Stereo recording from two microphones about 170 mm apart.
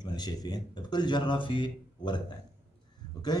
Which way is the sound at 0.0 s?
25° left (ahead or behind).